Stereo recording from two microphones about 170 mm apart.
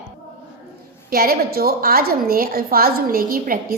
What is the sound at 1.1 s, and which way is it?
A woman's voice, 60° right (ahead or behind).